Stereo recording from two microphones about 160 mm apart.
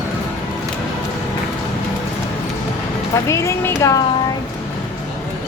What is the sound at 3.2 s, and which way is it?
Speech, 20° left (ahead or behind).